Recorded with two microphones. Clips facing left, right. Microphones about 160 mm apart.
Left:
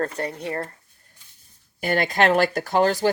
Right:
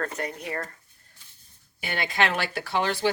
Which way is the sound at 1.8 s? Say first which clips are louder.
Left 6 dB; 45° left (ahead or behind).